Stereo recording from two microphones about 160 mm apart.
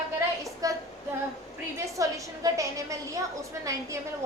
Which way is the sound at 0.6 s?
20° right (ahead or behind).